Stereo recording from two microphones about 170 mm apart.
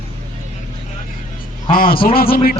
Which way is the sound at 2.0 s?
60° left (ahead or behind).